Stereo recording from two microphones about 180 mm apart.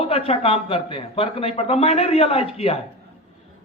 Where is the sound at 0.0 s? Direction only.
35° left (ahead or behind).